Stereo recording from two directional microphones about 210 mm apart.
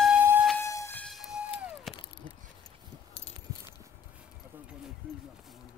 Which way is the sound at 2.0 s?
20° left (ahead or behind).